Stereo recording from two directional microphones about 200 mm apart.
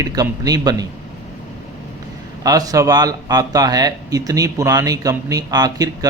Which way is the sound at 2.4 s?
15° right (ahead or behind).